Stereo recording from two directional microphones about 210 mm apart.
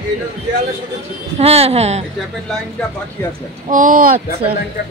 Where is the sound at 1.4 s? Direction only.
30° right (ahead or behind).